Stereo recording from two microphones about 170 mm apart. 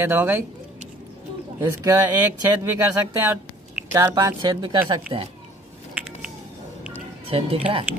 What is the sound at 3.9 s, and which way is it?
Speech, 20° right (ahead or behind).